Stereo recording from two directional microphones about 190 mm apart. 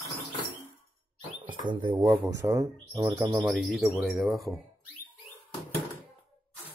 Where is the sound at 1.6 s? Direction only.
25° right (ahead or behind).